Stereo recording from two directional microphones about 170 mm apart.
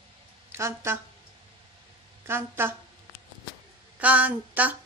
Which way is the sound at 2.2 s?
15° right (ahead or behind).